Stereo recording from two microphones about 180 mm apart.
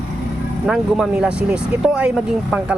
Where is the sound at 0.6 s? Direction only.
5° right (ahead or behind).